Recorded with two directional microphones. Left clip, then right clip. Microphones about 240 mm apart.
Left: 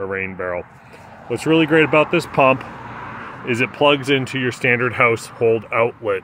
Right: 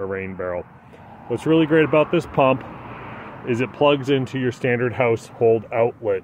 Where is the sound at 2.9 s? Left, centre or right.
Left.